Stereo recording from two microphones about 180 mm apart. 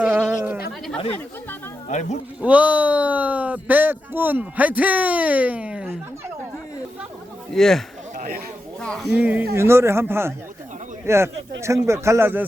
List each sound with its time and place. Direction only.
0.0 s sheep: 5° right (ahead or behind)
1.9 s speech: 45° left (ahead or behind)
2.4 s speech: 10° right (ahead or behind)
7.5 s speech: centre (ahead or behind)
8.1 s a sound: 50° right (ahead or behind)
8.8 s speech: 5° left (ahead or behind)
9.1 s speech: 10° right (ahead or behind)